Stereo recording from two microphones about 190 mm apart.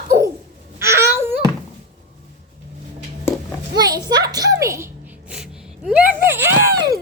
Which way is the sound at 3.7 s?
20° right (ahead or behind).